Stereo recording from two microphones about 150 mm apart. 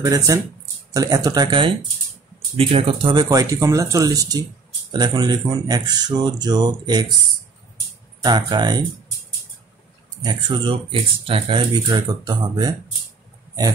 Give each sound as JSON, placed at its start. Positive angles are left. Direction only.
{"t": 0.0, "sound": "speech", "side_deg": -25}
{"t": 8.2, "sound": "speech", "side_deg": -30}
{"t": 10.2, "sound": "speech", "side_deg": -35}